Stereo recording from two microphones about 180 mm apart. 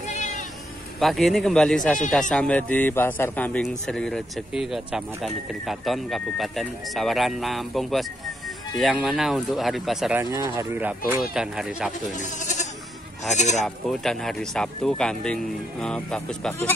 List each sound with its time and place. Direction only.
0.9 s speech: centre (ahead or behind)
10.3 s speech: 20° right (ahead or behind); by 11.9 s 5° right (ahead or behind)
12.2 s speech: 45° left (ahead or behind)
13.8 s speech: centre (ahead or behind)